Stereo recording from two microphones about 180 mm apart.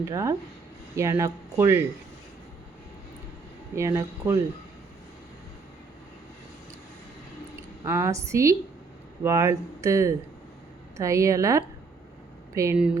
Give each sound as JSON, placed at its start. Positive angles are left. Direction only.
{"t": 0.0, "sound": "speech", "side_deg": -20}
{"t": 3.8, "sound": "speech", "side_deg": -15}
{"t": 7.9, "sound": "speech", "side_deg": -15}